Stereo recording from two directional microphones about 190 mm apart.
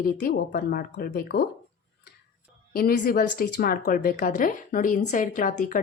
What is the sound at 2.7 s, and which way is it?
A woman's voice, 50° left (ahead or behind).